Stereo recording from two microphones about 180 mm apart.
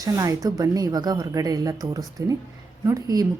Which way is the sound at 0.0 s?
20° right (ahead or behind).